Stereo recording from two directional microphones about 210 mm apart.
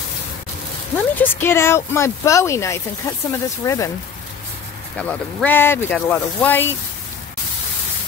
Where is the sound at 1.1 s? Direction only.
10° left (ahead or behind).